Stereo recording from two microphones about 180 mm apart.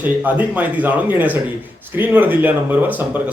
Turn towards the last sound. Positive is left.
turn(degrees=-10)  # may be behind; listen again after turning